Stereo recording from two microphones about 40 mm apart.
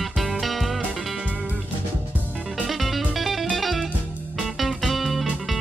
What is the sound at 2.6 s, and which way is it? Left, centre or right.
Music, centre.